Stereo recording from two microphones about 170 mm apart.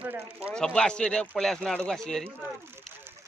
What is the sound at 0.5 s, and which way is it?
Speech, 5° left (ahead or behind).